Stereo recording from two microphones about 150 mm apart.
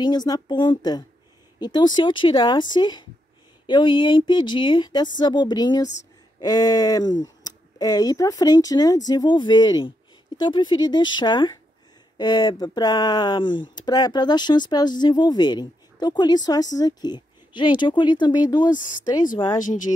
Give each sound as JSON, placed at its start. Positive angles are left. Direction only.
{"t": 0.0, "sound": "a woman's voice", "side_deg": 25}
{"t": 18.8, "sound": "speech", "side_deg": 60}